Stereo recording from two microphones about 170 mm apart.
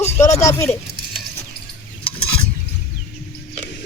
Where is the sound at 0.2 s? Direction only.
15° left (ahead or behind).